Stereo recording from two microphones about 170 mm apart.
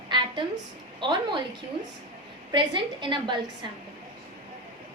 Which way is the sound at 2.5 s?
30° right (ahead or behind).